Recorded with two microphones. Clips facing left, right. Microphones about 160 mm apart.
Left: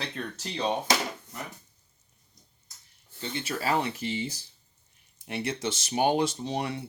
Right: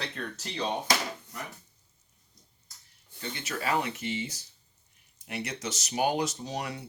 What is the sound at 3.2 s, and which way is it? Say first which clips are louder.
Speech: left 3 dB; 30° left (ahead or behind).